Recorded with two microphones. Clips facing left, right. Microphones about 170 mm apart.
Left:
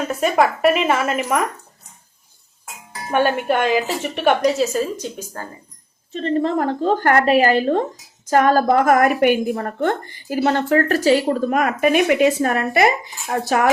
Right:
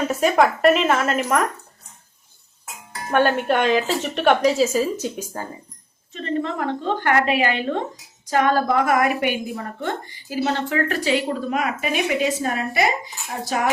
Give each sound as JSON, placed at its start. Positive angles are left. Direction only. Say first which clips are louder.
{"t": 0.1, "sound": "a woman's voice", "louder": "left 1 dB", "side_deg": 0}
{"t": 2.6, "sound": "speech", "louder": "even", "side_deg": 5}
{"t": 5.3, "sound": "speech", "louder": "right 1 dB", "side_deg": -15}
{"t": 6.1, "sound": "a woman's voice", "louder": "left 5 dB", "side_deg": 35}